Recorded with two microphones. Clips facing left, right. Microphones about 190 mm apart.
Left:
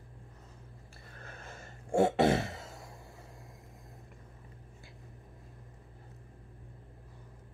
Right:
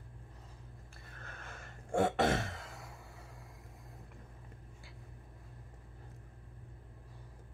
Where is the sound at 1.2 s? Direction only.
30° left (ahead or behind).